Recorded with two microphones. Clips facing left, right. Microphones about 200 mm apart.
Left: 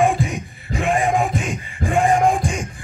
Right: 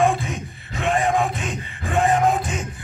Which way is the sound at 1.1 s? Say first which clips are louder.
Left 2 dB; 15° left (ahead or behind).